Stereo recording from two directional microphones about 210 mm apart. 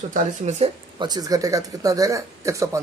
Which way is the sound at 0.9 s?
20° right (ahead or behind).